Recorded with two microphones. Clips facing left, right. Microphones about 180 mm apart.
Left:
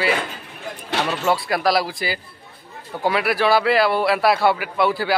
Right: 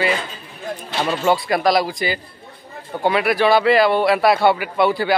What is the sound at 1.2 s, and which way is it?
A man's voice, centre (ahead or behind).